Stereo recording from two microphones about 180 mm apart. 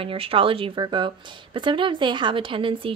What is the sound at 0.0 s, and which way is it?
Speech, 30° right (ahead or behind).